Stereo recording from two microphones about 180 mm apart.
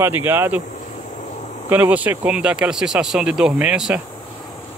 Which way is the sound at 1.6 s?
10° right (ahead or behind).